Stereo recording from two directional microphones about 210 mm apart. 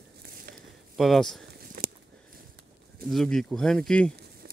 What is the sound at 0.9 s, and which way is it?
Speech, centre (ahead or behind).